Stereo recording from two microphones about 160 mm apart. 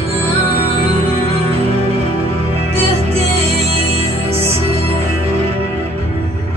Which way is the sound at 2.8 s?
40° right (ahead or behind).